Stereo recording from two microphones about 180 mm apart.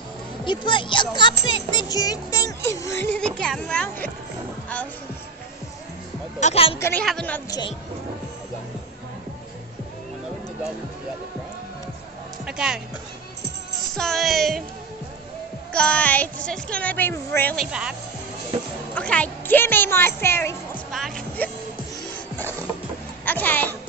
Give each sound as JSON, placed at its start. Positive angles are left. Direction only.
{"t": 0.5, "sound": "speech", "side_deg": 25}
{"t": 6.4, "sound": "a woman's voice", "side_deg": 30}
{"t": 6.8, "sound": "speech", "side_deg": 10}
{"t": 12.4, "sound": "speech", "side_deg": -5}
{"t": 13.9, "sound": "speech", "side_deg": 0}
{"t": 15.7, "sound": "speech", "side_deg": 5}
{"t": 18.5, "sound": "music", "side_deg": -35}
{"t": 18.9, "sound": "speech", "side_deg": 5}
{"t": 20.9, "sound": "music", "side_deg": 0}
{"t": 23.2, "sound": "a sound", "side_deg": 10}